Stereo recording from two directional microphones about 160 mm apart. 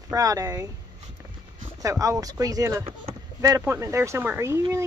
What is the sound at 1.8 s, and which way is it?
Fowl, 20° right (ahead or behind).